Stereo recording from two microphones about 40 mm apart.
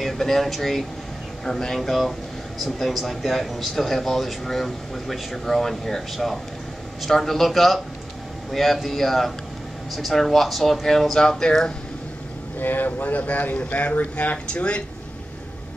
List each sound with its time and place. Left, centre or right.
0.0 s speech: centre
1.8 s speech: centre
12.5 s speech: left
14.5 s speech: left